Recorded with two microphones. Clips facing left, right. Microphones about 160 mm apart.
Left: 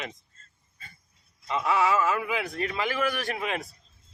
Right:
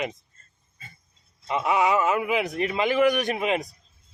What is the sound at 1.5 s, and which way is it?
A man's voice, 20° right (ahead or behind).